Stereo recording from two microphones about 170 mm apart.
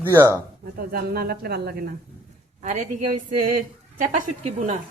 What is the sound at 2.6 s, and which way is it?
Speech, 45° right (ahead or behind).